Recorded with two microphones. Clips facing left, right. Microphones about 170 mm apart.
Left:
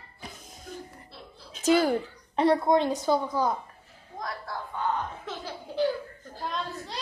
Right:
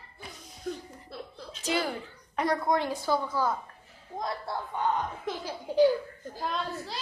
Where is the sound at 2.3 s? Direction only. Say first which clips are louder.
Left 5 dB; 30° left (ahead or behind).